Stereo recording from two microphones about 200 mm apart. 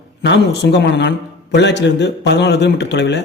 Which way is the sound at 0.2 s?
60° left (ahead or behind).